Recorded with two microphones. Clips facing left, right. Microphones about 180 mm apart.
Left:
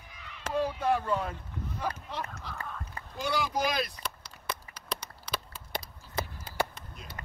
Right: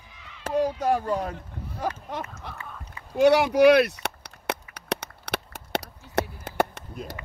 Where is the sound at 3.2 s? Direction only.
70° right (ahead or behind).